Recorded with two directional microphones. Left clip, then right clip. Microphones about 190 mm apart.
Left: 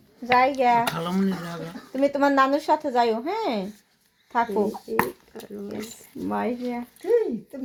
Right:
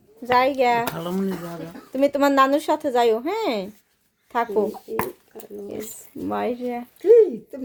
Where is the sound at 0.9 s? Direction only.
40° right (ahead or behind).